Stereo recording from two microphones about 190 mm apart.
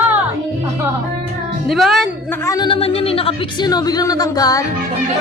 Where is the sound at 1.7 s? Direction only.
Centre (ahead or behind).